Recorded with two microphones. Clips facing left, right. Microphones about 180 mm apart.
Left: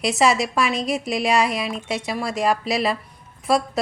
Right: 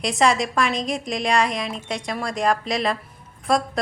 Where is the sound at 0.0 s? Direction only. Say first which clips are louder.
Left 1 dB; 5° left (ahead or behind).